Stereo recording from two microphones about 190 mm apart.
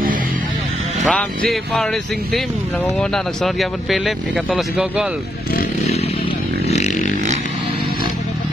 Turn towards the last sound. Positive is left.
turn(degrees=40)  # may be behind; listen again after turning